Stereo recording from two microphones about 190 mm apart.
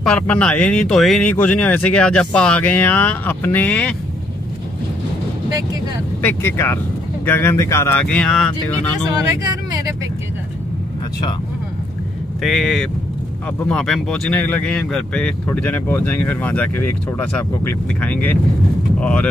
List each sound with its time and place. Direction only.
0.0 s speech: 5° left (ahead or behind)
6.2 s speech: 10° left (ahead or behind)
9.7 s vehicle: 20° right (ahead or behind)
12.4 s speech: centre (ahead or behind)
18.0 s speech: 10° left (ahead or behind)